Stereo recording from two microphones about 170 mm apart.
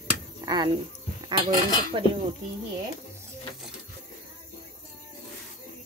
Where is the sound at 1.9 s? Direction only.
30° right (ahead or behind).